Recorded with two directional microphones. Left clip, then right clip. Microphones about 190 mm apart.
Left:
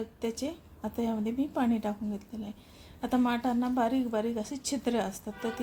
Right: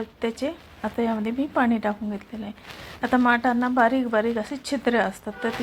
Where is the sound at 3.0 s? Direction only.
10° right (ahead or behind).